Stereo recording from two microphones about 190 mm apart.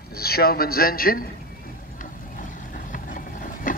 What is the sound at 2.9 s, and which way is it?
Vehicle, 45° left (ahead or behind).